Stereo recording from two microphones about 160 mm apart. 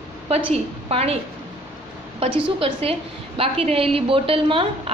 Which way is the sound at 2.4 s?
35° right (ahead or behind).